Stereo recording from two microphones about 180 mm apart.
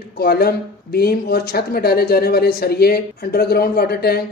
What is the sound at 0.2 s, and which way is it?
Speech, 60° left (ahead or behind).